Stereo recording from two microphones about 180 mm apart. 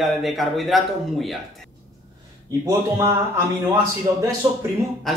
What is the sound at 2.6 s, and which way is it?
Speech, 15° right (ahead or behind).